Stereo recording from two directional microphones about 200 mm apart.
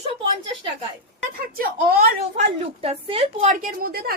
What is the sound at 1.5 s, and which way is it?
Speech, 45° right (ahead or behind).